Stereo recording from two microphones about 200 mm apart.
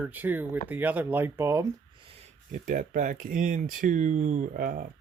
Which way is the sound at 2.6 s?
40° right (ahead or behind).